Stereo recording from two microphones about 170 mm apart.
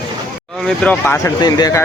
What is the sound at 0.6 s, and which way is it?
Speech, 10° left (ahead or behind).